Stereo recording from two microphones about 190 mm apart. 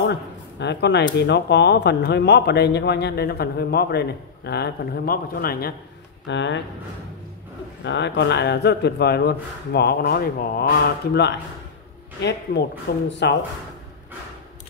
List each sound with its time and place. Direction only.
0.0 s speech: 65° left (ahead or behind)
6.2 s speech: 70° left (ahead or behind)
7.8 s speech: 65° left (ahead or behind)
12.2 s speech: 65° left (ahead or behind)